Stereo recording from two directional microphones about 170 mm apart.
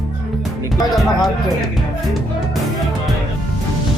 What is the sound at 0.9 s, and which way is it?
Speech, centre (ahead or behind).